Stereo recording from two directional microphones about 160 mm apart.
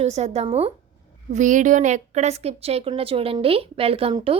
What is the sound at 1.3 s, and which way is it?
A woman's voice, 50° right (ahead or behind).